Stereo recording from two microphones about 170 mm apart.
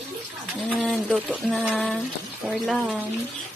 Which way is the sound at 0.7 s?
5° left (ahead or behind).